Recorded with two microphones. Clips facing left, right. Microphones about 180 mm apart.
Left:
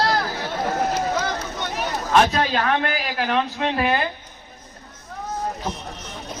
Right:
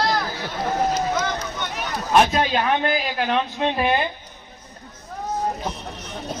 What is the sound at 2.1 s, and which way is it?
A man's voice, 15° right (ahead or behind).